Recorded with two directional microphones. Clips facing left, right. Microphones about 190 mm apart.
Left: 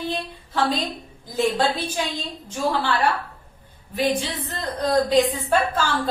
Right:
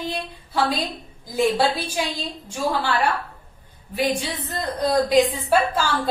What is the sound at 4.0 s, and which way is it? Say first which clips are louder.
A woman's voice: left 1 dB; 15° right (ahead or behind).